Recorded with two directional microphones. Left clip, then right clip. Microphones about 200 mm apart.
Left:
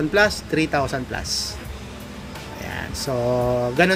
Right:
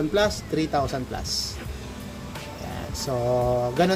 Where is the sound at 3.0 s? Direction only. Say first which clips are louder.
Left 2 dB; 20° left (ahead or behind).